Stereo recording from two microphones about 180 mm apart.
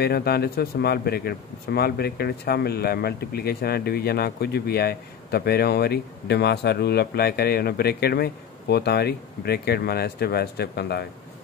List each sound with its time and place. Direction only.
0.0 s speech: 60° left (ahead or behind)